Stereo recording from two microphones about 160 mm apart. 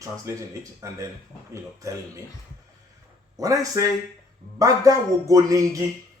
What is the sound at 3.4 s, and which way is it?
Speech, 20° right (ahead or behind).